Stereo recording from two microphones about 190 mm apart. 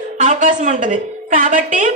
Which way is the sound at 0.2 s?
40° right (ahead or behind).